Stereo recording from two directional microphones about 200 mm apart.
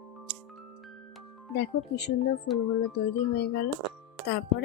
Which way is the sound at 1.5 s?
55° left (ahead or behind).